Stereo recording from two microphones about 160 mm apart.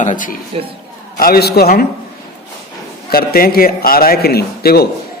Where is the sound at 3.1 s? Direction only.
70° left (ahead or behind).